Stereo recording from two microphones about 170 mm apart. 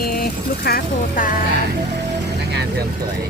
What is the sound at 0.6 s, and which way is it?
Speech, 65° left (ahead or behind).